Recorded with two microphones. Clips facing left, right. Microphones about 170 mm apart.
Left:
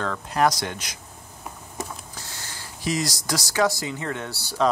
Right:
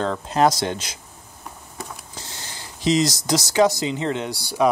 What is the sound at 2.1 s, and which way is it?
Speech, 20° right (ahead or behind).